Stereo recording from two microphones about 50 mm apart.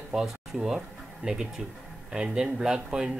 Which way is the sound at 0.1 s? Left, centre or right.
Centre.